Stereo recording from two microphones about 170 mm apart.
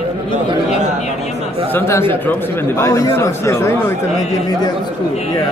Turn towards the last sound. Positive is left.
turn(degrees=15)  # may be behind; listen again after turning